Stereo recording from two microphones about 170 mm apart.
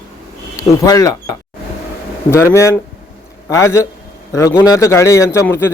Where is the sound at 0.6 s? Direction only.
20° left (ahead or behind).